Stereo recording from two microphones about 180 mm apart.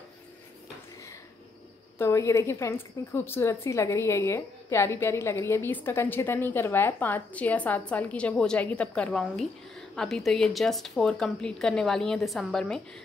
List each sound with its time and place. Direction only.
2.0 s a woman's voice: 15° left (ahead or behind)